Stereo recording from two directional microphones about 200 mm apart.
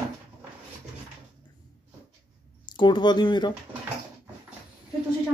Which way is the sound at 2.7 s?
25° left (ahead or behind).